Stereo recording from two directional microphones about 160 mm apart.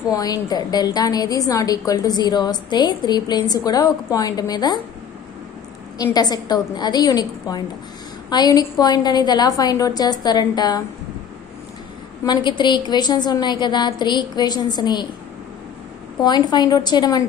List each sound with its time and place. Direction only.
0.1 s a woman's voice: 25° left (ahead or behind)
6.1 s a woman's voice: 25° left (ahead or behind)
12.3 s a woman's voice: 25° left (ahead or behind)
16.2 s a woman's voice: 25° left (ahead or behind)